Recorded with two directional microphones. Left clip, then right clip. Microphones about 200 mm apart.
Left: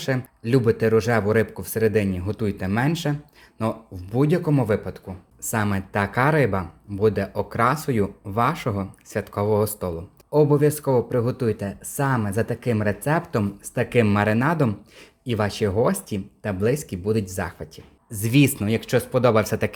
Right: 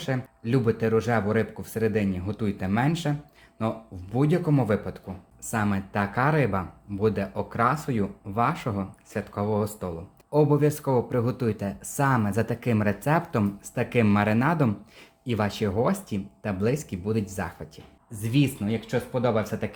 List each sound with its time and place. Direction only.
0.0 s speech: 25° left (ahead or behind)
10.3 s speech: 20° left (ahead or behind)
18.1 s speech: 35° left (ahead or behind)